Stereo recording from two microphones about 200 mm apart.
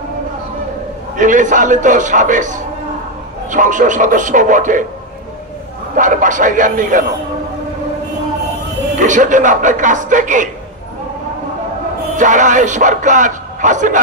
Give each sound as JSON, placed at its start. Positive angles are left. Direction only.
{"t": 1.1, "sound": "speech", "side_deg": -40}
{"t": 5.9, "sound": "speech", "side_deg": -40}
{"t": 8.9, "sound": "speech", "side_deg": -40}
{"t": 12.2, "sound": "speech", "side_deg": -40}